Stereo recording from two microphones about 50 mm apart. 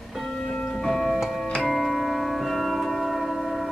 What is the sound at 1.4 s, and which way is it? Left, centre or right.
Music, centre.